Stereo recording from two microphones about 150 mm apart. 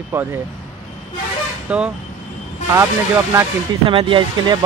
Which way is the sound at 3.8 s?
35° right (ahead or behind).